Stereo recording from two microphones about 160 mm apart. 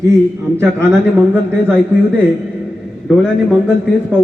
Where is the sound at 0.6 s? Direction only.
15° right (ahead or behind).